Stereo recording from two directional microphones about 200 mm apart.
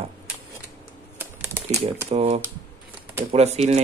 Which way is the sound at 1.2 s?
10° right (ahead or behind).